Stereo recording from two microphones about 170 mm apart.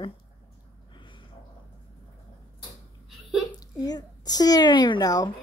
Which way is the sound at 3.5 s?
25° left (ahead or behind).